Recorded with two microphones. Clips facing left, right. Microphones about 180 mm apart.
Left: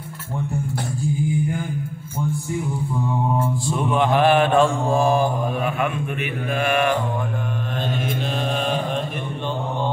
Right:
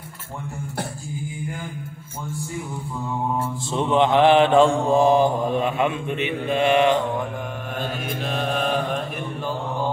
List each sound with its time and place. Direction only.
3.6 s mantra: 25° right (ahead or behind)
8.4 s mantra: centre (ahead or behind)